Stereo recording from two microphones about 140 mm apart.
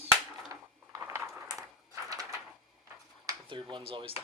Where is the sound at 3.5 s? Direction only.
35° right (ahead or behind).